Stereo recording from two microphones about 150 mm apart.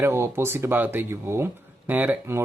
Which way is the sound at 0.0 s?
15° right (ahead or behind).